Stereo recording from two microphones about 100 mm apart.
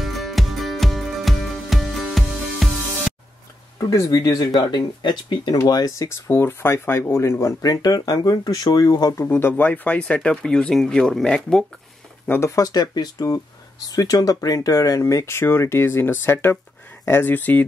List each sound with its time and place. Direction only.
0.0 s music: centre (ahead or behind)
3.7 s speech: 35° left (ahead or behind); by 5.6 s 50° left (ahead or behind)
5.7 s speech: 40° left (ahead or behind)
9.2 s speech: 25° left (ahead or behind); by 11.6 s 5° left (ahead or behind)
12.3 s speech: 25° left (ahead or behind)